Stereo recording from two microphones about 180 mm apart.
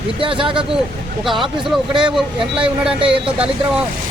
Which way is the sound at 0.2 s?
30° right (ahead or behind).